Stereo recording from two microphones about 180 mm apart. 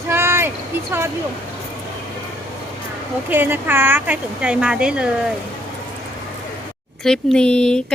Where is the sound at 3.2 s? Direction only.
10° right (ahead or behind).